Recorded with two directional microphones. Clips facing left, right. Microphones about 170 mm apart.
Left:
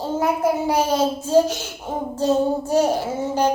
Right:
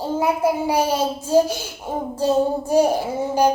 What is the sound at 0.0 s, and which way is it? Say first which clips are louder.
A child's voice: right 1 dB; 10° right (ahead or behind).